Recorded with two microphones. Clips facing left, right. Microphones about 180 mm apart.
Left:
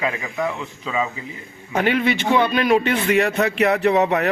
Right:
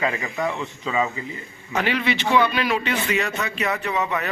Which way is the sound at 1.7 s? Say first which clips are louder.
Left 4 dB; 50° left (ahead or behind).